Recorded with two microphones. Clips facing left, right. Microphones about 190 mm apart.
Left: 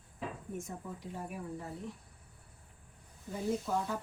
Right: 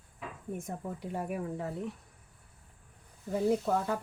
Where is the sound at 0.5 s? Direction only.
60° right (ahead or behind).